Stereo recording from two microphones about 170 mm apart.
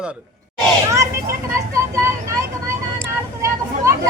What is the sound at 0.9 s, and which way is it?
Vehicle, 20° right (ahead or behind).